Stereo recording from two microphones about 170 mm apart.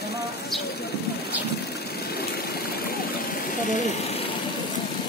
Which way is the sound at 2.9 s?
60° left (ahead or behind).